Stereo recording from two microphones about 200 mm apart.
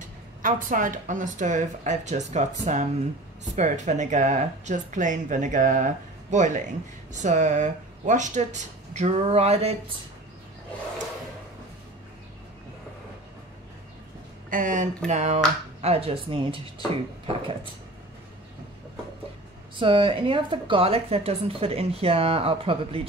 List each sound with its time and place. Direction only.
0.4 s speech: 40° right (ahead or behind)
14.5 s a woman's voice: 40° right (ahead or behind)
19.8 s a woman's voice: 25° right (ahead or behind)